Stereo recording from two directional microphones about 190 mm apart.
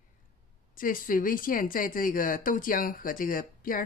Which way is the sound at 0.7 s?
45° left (ahead or behind).